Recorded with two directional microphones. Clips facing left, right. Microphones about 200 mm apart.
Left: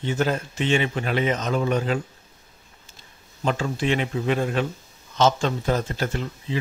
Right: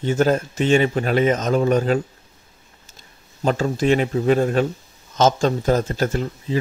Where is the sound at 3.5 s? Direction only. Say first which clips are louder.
Right 5 dB; 40° right (ahead or behind).